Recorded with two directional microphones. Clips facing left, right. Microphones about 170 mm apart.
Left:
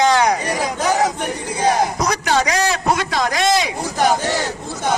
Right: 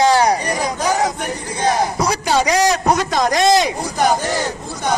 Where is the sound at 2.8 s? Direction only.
40° right (ahead or behind).